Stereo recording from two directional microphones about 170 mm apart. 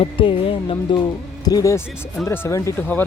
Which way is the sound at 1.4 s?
20° left (ahead or behind).